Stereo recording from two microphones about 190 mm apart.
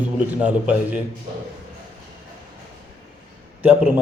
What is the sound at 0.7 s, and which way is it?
Speech, 5° right (ahead or behind).